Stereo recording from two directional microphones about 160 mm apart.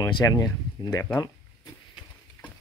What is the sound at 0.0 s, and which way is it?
Speech, 20° left (ahead or behind).